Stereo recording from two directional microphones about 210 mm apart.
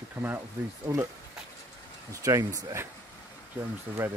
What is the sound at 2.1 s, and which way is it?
Speech, 15° right (ahead or behind).